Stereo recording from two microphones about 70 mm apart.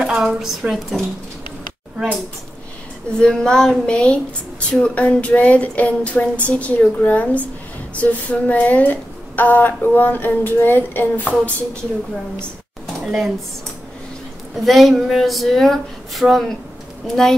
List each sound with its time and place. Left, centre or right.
0.0 s speech: centre
3.1 s speech: centre; by 11.2 s left
11.2 s speech: centre
13.0 s speech: centre
14.6 s speech: centre